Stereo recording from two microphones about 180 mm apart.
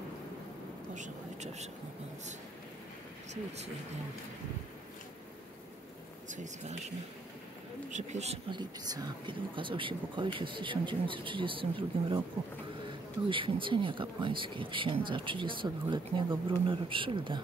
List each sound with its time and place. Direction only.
0.9 s speech: 40° right (ahead or behind)
6.2 s speech: 45° right (ahead or behind)
7.9 s speech: 40° right (ahead or behind)
8.5 s speech: 25° right (ahead or behind)
13.3 s speech: 30° right (ahead or behind)